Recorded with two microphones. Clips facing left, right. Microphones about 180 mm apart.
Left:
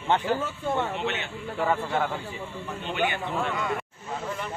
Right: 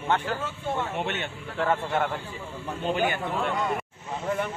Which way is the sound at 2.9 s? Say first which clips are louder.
Right 2 dB; 45° right (ahead or behind).